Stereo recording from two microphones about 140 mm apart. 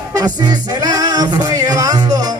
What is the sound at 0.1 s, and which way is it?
Music, 25° right (ahead or behind).